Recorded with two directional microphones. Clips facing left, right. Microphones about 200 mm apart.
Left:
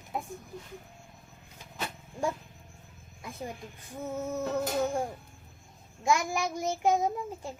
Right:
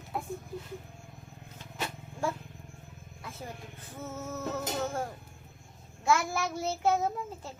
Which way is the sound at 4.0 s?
15° left (ahead or behind).